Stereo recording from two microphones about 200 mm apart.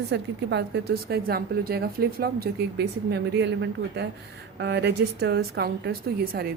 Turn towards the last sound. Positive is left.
turn(degrees=-55)  # may be behind; listen again after turning